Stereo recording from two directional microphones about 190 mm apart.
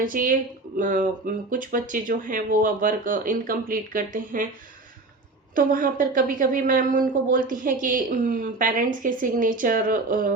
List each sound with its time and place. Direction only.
0.0 s a woman's voice: 45° right (ahead or behind)
5.5 s a woman's voice: 45° right (ahead or behind)